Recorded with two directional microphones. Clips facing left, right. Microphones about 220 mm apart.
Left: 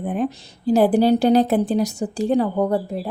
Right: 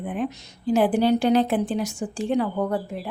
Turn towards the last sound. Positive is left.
turn(degrees=35)  # may be behind; listen again after turning